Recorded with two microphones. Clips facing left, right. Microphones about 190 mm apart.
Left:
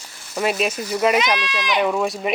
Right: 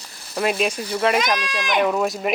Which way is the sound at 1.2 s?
45° right (ahead or behind).